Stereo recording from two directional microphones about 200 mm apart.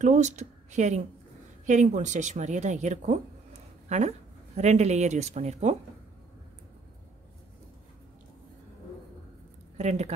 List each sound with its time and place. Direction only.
0.0 s a woman's voice: 35° right (ahead or behind)
4.6 s a woman's voice: 35° right (ahead or behind)
9.8 s a woman's voice: 35° right (ahead or behind)